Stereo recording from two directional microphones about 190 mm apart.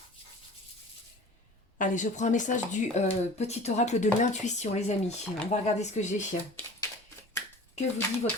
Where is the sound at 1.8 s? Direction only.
40° left (ahead or behind).